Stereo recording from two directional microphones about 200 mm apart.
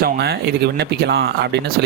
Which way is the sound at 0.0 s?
55° right (ahead or behind).